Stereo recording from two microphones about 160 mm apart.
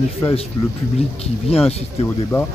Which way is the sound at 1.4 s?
35° left (ahead or behind).